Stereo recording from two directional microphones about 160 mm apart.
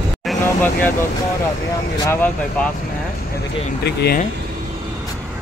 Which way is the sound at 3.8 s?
90° left.